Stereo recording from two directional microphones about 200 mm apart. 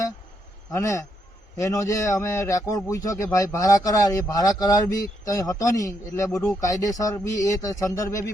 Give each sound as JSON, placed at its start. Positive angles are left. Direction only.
{"t": 0.7, "sound": "a man's voice", "side_deg": 15}